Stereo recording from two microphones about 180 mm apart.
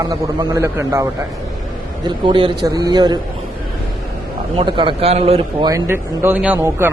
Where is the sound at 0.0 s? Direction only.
20° right (ahead or behind).